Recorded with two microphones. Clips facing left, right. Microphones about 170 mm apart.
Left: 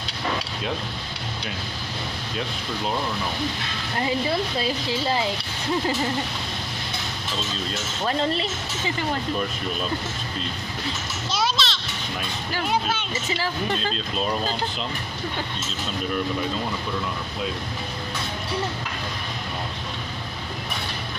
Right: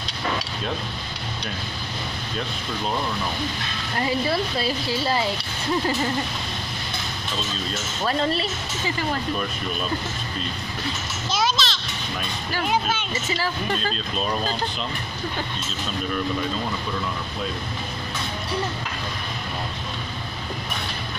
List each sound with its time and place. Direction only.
4.6 s speech: 20° left (ahead or behind)
8.0 s speech: 20° left (ahead or behind)
11.3 s children playing: centre (ahead or behind)